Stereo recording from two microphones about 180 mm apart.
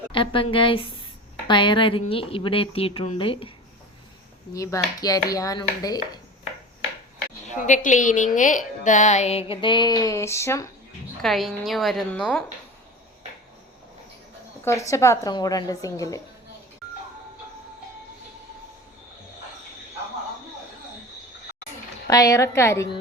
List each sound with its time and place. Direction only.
0.1 s a woman's voice: 30° left (ahead or behind)
4.5 s a woman's voice: 20° left (ahead or behind)
7.5 s a woman's voice: 45° left (ahead or behind); by 10.7 s 15° left (ahead or behind)
11.2 s a woman's voice: centre (ahead or behind)
14.6 s a woman's voice: 15° left (ahead or behind)
22.0 s a woman's voice: 20° left (ahead or behind)